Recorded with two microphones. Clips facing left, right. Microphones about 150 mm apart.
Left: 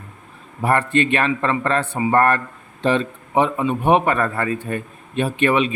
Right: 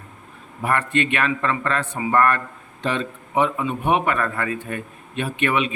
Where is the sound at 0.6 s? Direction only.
30° left (ahead or behind).